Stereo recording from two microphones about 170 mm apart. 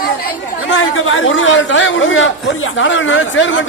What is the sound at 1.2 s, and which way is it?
Speech, 90° left.